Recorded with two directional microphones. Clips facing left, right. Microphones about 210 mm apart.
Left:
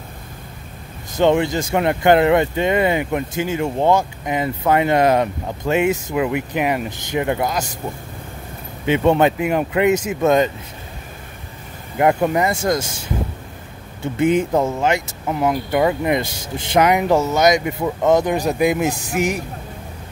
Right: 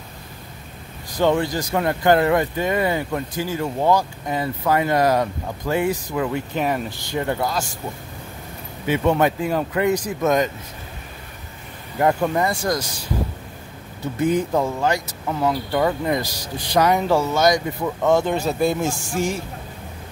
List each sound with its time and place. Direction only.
1.1 s speech: 25° left (ahead or behind)
8.8 s speech: 25° left (ahead or behind)
12.0 s speech: 20° left (ahead or behind)
14.0 s speech: 25° left (ahead or behind)